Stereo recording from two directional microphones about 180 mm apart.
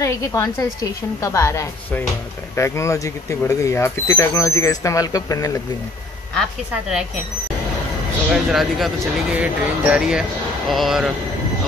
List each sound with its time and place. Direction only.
0.0 s speech: 15° left (ahead or behind)
8.3 s speech: centre (ahead or behind)